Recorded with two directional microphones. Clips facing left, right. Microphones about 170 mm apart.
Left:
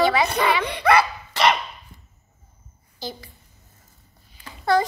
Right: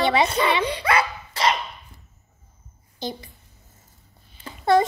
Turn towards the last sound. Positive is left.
turn(degrees=-25)  # may be behind; listen again after turning